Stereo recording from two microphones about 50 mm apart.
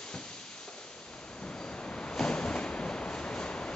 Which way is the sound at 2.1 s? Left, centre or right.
Centre.